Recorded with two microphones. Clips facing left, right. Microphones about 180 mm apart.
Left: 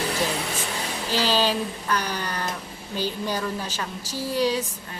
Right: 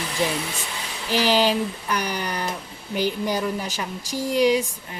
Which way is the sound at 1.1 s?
15° right (ahead or behind).